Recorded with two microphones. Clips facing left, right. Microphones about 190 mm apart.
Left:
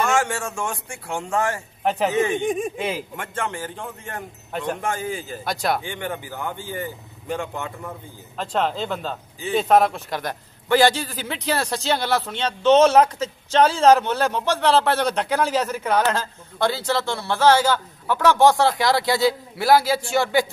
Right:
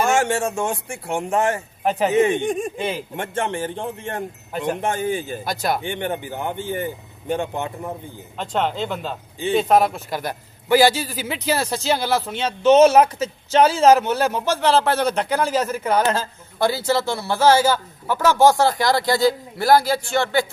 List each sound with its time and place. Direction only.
0.0 s a man's voice: 25° right (ahead or behind)
1.8 s a man's voice: centre (ahead or behind)
2.1 s a man's voice: 20° right (ahead or behind)
2.4 s a man's voice: centre (ahead or behind)
3.2 s a man's voice: 25° right (ahead or behind)
4.5 s speech: 5° right (ahead or behind)
4.7 s a man's voice: 25° right (ahead or behind)
5.4 s a man's voice: centre (ahead or behind)
5.8 s a man's voice: 25° right (ahead or behind)
8.4 s a man's voice: centre (ahead or behind)